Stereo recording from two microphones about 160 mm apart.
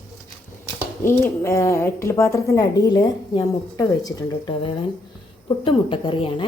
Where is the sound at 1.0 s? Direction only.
15° left (ahead or behind); by 6.5 s 35° left (ahead or behind).